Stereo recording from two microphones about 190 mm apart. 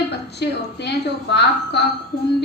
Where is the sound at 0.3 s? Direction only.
60° left (ahead or behind).